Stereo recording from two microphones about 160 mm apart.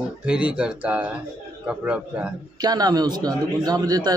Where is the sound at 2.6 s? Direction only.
25° right (ahead or behind).